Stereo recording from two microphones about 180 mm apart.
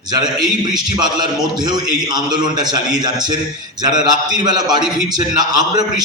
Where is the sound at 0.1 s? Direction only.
25° right (ahead or behind).